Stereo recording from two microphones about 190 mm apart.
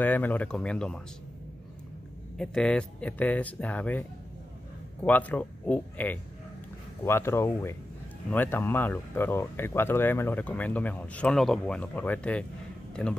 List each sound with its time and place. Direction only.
0.0 s speech: 10° left (ahead or behind)
2.3 s speech: 5° left (ahead or behind)
5.0 s speech: 10° left (ahead or behind)